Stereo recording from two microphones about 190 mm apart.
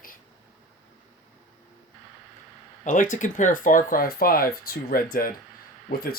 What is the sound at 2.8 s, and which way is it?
Speech, 45° left (ahead or behind).